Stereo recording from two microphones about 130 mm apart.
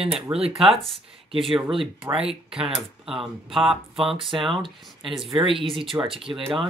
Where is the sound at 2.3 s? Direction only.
5° right (ahead or behind).